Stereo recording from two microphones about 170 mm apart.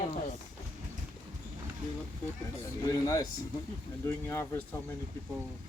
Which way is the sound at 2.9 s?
20° left (ahead or behind).